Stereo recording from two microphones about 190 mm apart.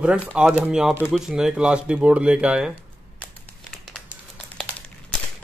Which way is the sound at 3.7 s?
Centre (ahead or behind).